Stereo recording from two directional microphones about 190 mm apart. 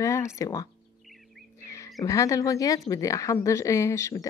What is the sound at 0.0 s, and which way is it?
Speech, 15° left (ahead or behind).